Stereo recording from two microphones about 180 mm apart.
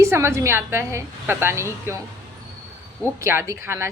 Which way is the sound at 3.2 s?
15° right (ahead or behind).